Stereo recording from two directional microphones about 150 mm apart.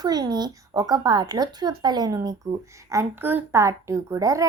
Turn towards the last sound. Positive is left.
turn(degrees=-20)  # may be behind; listen again after turning